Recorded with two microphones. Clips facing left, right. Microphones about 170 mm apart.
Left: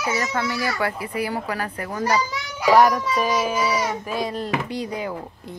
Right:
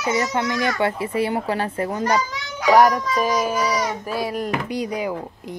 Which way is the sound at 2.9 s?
5° left (ahead or behind).